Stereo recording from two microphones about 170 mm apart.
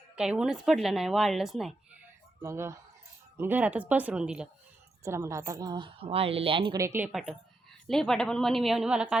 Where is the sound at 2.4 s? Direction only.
15° right (ahead or behind).